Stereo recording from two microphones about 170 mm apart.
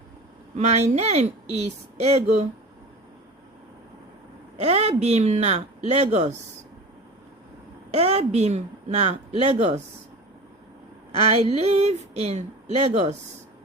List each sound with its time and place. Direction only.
0.5 s speech: 40° right (ahead or behind)
4.5 s speech: 40° right (ahead or behind)
7.9 s speech: 40° right (ahead or behind)
11.1 s speech: 35° right (ahead or behind)